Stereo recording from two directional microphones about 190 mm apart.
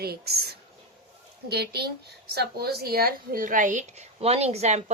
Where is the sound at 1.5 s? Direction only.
60° right (ahead or behind).